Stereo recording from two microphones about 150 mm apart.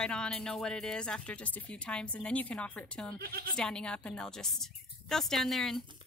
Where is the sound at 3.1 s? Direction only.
90° right.